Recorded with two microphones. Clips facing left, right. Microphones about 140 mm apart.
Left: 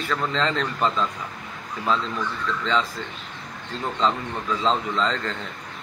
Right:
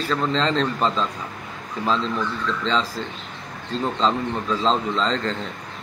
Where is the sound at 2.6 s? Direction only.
30° right (ahead or behind).